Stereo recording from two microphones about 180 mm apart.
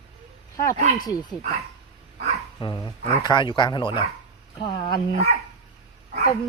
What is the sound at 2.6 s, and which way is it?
Speech, 25° left (ahead or behind).